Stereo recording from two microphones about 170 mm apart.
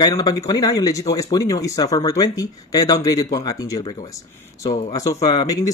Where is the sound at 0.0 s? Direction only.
20° left (ahead or behind).